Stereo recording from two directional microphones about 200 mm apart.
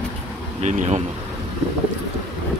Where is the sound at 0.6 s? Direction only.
35° right (ahead or behind).